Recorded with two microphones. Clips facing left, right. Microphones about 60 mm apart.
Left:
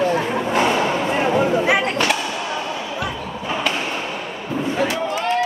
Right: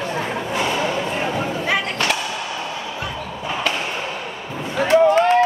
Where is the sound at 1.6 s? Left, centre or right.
Centre.